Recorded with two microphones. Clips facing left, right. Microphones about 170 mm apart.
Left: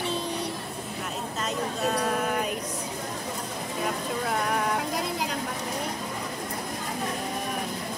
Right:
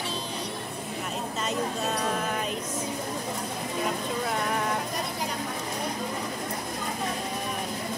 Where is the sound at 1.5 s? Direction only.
Centre (ahead or behind).